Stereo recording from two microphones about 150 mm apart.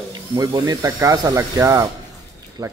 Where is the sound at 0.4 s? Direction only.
25° right (ahead or behind).